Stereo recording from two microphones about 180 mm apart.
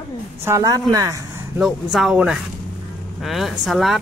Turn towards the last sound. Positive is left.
turn(degrees=0)  # may be behind; listen again after turning